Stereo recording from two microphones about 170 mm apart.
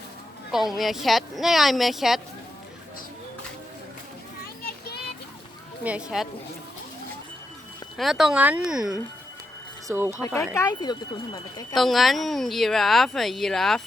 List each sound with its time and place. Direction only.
0.5 s speech: centre (ahead or behind)
5.8 s speech: 5° right (ahead or behind)
7.9 s speech: centre (ahead or behind)
10.1 s speech: 15° left (ahead or behind)
11.7 s speech: centre (ahead or behind)